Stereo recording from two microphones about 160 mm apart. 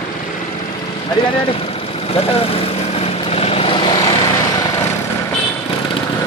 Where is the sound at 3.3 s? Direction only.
40° left (ahead or behind).